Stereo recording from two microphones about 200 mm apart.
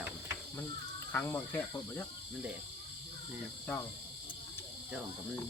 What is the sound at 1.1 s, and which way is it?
Speech, 10° left (ahead or behind).